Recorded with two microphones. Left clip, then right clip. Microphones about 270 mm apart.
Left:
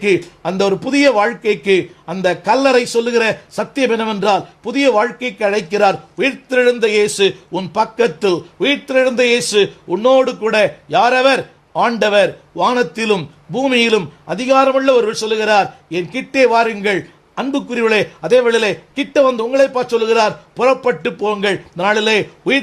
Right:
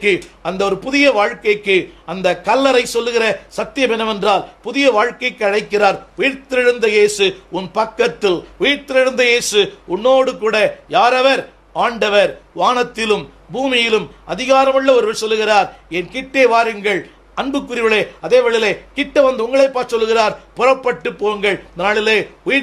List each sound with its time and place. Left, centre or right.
0.0 s a man's voice: left